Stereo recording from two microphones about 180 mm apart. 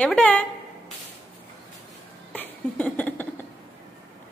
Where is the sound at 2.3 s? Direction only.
10° left (ahead or behind).